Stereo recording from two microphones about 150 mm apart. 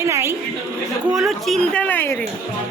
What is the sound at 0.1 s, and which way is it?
Chatter, 20° right (ahead or behind).